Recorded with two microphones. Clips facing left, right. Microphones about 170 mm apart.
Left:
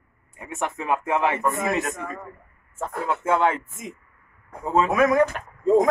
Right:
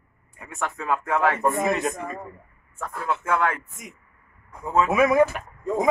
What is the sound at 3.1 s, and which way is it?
Speech, 25° left (ahead or behind).